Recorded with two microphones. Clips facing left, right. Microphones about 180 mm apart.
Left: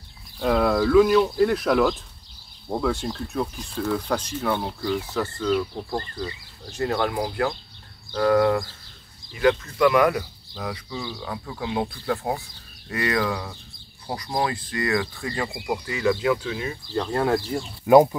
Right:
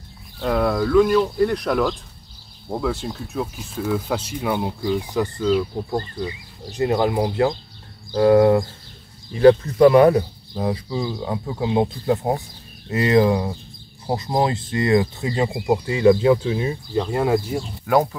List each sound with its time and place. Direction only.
0.4 s speech: centre (ahead or behind); by 16.7 s 25° right (ahead or behind)
16.9 s speech: 10° right (ahead or behind)
17.8 s speech: 20° left (ahead or behind)